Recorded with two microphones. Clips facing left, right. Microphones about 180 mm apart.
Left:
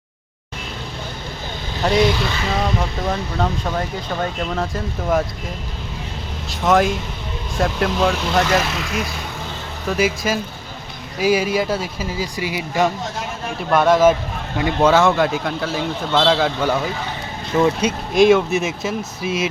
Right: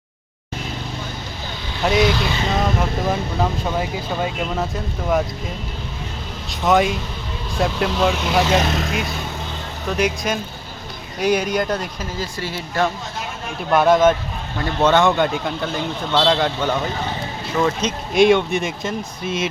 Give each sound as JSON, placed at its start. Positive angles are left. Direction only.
{"t": 1.8, "sound": "speech", "side_deg": -5}
{"t": 6.5, "sound": "speech", "side_deg": 0}
{"t": 8.7, "sound": "speech", "side_deg": -40}
{"t": 9.9, "sound": "speech", "side_deg": 5}
{"t": 13.6, "sound": "speech", "side_deg": 0}
{"t": 18.1, "sound": "speech", "side_deg": 0}